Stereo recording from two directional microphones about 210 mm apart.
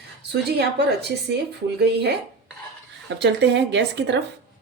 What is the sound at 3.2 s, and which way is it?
Speech, 55° right (ahead or behind).